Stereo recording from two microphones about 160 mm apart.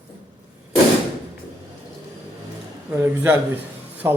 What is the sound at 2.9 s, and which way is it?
A man's voice, 15° right (ahead or behind).